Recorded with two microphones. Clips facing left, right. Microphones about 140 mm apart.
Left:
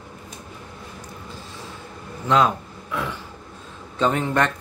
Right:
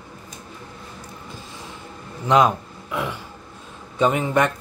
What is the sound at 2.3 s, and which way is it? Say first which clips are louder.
Speech: right 2 dB; 15° right (ahead or behind).